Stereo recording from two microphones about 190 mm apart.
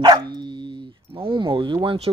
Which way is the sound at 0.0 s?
20° right (ahead or behind).